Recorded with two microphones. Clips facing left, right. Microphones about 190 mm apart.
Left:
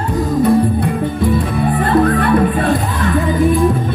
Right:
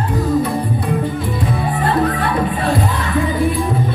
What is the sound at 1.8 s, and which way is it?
Music, 55° left (ahead or behind).